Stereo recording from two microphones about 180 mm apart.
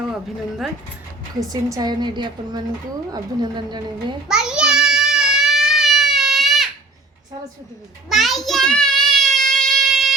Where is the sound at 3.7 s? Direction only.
25° right (ahead or behind).